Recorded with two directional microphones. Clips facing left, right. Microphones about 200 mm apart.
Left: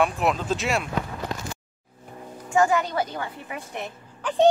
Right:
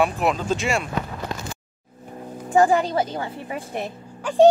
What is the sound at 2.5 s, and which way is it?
A woman's voice, 35° right (ahead or behind).